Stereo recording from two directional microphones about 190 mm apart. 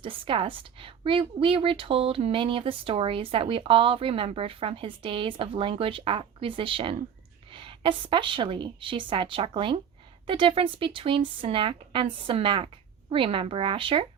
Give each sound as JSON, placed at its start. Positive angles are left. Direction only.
{"t": 0.0, "sound": "a woman's voice", "side_deg": -25}